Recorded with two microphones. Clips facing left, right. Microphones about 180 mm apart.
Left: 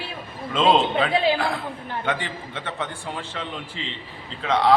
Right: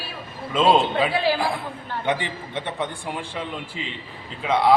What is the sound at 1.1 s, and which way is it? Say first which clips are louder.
Speech: left 1 dB; 20° left (ahead or behind).